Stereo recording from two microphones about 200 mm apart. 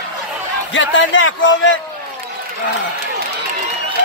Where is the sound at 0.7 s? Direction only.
70° left (ahead or behind).